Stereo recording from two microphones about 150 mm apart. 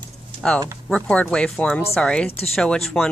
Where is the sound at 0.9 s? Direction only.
5° left (ahead or behind).